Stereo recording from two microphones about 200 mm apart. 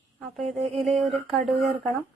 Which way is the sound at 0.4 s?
35° right (ahead or behind).